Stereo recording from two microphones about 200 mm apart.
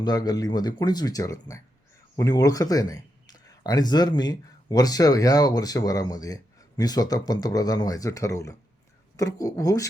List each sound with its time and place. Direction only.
0.0 s speech: 20° left (ahead or behind)